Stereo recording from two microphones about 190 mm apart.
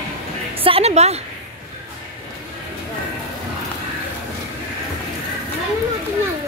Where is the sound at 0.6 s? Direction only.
30° right (ahead or behind).